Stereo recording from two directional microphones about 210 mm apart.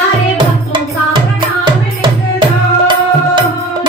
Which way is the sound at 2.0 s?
20° right (ahead or behind).